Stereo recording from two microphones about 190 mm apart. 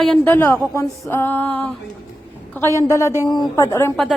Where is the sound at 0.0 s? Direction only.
5° left (ahead or behind).